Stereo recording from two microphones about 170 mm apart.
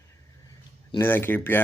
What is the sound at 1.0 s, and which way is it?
Speech, 10° left (ahead or behind).